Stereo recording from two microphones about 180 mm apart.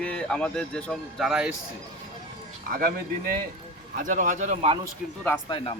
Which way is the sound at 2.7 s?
55° right (ahead or behind).